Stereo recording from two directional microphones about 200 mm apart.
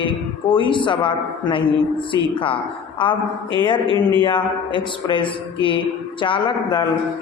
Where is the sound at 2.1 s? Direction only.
20° right (ahead or behind).